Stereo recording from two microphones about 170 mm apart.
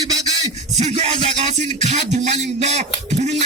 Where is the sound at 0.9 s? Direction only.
35° right (ahead or behind).